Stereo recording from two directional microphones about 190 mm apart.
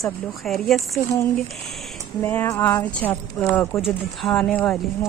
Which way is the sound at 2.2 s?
10° left (ahead or behind).